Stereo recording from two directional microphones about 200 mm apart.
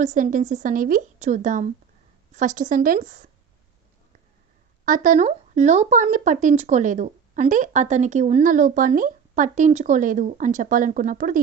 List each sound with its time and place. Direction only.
0.0 s speech: 40° right (ahead or behind)
4.9 s speech: 40° right (ahead or behind)